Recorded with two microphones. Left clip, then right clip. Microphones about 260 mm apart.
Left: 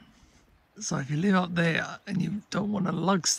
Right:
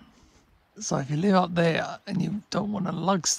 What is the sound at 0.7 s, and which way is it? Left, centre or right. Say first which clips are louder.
Speech: right 4 dB; centre.